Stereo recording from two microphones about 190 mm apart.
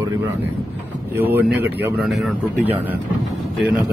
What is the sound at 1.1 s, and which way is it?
Speech, 10° right (ahead or behind).